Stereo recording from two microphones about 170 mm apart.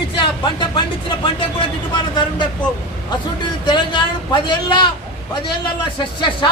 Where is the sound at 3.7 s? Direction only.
30° left (ahead or behind).